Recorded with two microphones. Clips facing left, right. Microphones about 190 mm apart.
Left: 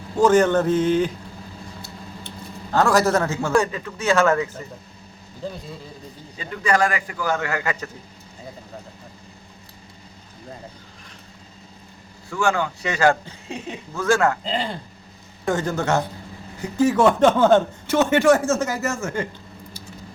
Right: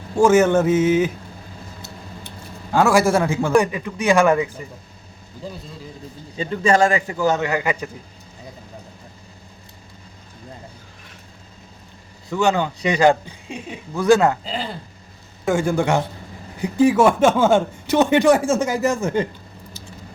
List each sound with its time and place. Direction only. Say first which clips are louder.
0.2 s speech: right 2 dB; 10° right (ahead or behind)
2.7 s speech: right 2 dB; 10° right (ahead or behind)
6.3 s a man's voice: right 4 dB; 25° right (ahead or behind)
12.3 s speech: right 3 dB; 20° right (ahead or behind)
14.4 s a man's voice: left 2 dB; centre (ahead or behind); by 19.3 s 20° right (ahead or behind)